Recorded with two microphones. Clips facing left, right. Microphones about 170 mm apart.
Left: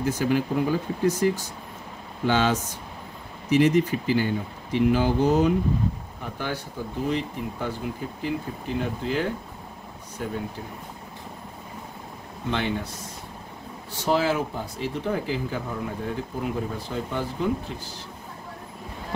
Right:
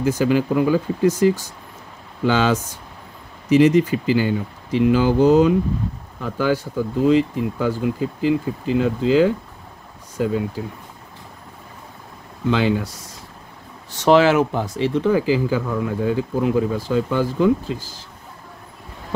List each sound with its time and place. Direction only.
0.0 s speech: 90° right
12.4 s speech: 90° right
13.9 s speech: 85° right